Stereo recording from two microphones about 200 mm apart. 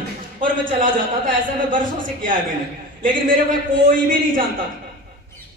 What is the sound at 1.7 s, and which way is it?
Speech, 45° right (ahead or behind).